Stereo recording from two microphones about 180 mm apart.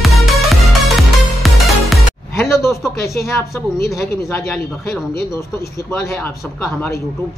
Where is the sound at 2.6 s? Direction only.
15° left (ahead or behind).